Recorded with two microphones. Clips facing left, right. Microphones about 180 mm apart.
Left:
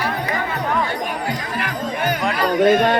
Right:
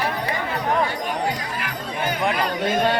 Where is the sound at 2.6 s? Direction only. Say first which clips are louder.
Left 7 dB; 65° left (ahead or behind).